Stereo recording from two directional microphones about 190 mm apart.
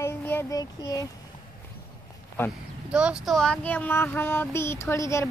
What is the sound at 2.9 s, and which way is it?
Child singing, 5° right (ahead or behind).